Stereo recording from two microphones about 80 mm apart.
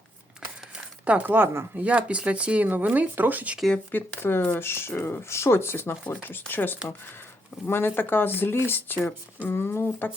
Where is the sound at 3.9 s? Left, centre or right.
Left.